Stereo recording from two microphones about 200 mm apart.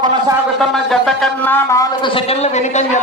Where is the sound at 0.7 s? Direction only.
Centre (ahead or behind).